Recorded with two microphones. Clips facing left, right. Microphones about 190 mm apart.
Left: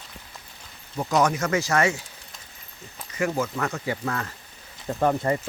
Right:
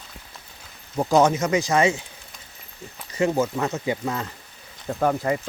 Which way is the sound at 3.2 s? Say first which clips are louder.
Right 4 dB; 25° right (ahead or behind).